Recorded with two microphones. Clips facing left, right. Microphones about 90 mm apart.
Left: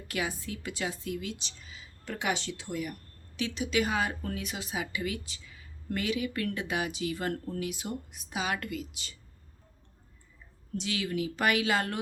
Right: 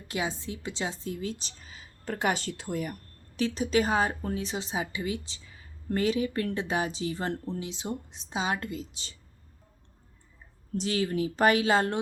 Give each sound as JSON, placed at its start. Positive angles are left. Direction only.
{"t": 0.1, "sound": "a woman's voice", "side_deg": -25}
{"t": 10.8, "sound": "speech", "side_deg": -40}